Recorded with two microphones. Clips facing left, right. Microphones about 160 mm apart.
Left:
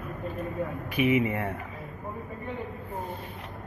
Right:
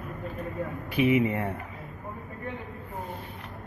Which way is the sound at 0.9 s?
15° left (ahead or behind).